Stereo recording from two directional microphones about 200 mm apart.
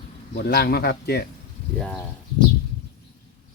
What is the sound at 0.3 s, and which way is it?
Speech, 50° left (ahead or behind).